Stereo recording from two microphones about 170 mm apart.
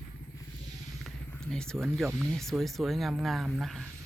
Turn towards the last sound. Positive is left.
turn(degrees=0)  # may be behind; listen again after turning